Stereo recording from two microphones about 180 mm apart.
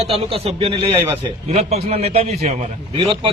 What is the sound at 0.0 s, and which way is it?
A man's voice, 30° right (ahead or behind).